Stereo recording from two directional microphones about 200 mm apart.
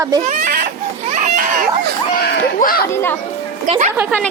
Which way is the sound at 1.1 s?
40° right (ahead or behind).